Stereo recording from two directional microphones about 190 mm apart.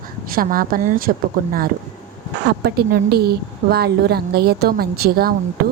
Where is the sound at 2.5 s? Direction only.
55° right (ahead or behind).